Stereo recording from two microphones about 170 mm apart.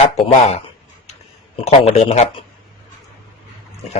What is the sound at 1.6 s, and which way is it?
Speech, 35° left (ahead or behind).